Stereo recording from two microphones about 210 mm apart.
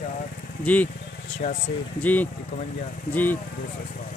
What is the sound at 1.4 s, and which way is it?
Speech, 35° left (ahead or behind).